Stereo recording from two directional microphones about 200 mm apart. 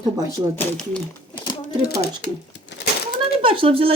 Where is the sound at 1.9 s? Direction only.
55° left (ahead or behind).